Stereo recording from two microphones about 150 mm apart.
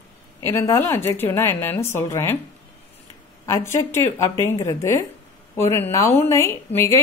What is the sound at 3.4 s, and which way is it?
A woman's voice, 20° left (ahead or behind).